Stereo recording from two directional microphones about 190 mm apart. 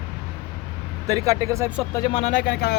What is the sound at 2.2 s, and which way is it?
Speech, 45° left (ahead or behind).